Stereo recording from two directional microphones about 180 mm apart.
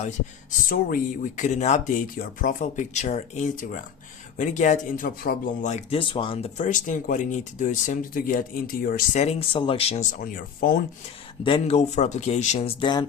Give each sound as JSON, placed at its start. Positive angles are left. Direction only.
{"t": 0.7, "sound": "speech", "side_deg": 50}
{"t": 6.7, "sound": "speech", "side_deg": 45}
{"t": 11.4, "sound": "speech", "side_deg": 30}